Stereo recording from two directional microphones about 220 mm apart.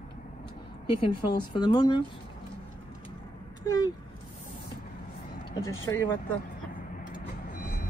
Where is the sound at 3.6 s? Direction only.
15° left (ahead or behind).